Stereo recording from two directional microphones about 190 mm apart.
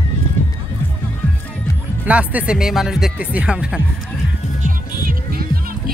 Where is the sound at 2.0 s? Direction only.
5° right (ahead or behind).